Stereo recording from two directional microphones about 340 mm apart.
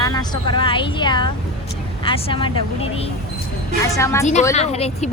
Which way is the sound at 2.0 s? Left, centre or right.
Centre.